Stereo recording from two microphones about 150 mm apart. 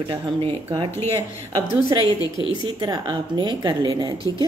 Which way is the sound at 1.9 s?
30° right (ahead or behind).